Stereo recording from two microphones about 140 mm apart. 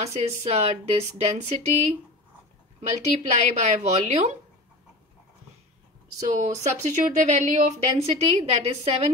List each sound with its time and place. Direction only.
0.0 s speech: 50° right (ahead or behind)
6.2 s speech: 60° right (ahead or behind)
8.0 s speech: 45° right (ahead or behind)